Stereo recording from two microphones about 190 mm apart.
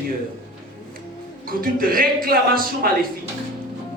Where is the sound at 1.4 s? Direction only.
50° right (ahead or behind).